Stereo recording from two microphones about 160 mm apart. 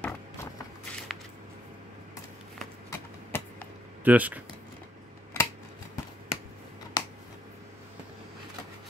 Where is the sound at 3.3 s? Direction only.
15° left (ahead or behind).